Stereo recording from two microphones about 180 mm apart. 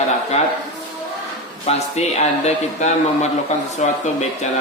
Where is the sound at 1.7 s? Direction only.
40° left (ahead or behind).